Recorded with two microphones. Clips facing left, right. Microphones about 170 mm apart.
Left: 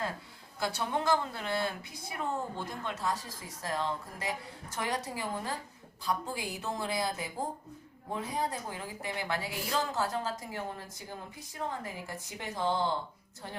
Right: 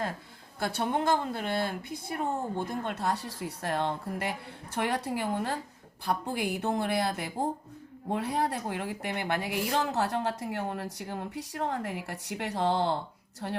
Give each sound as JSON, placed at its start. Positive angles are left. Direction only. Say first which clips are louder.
{"t": 0.6, "sound": "a woman's voice", "louder": "right 3 dB", "side_deg": -55}